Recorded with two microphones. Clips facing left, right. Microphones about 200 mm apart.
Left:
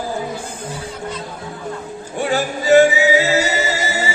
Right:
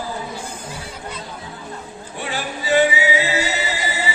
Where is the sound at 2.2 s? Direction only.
45° left (ahead or behind).